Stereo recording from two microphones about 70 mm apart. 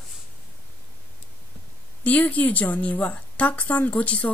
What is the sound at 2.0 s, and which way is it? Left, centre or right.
A woman's voice, left.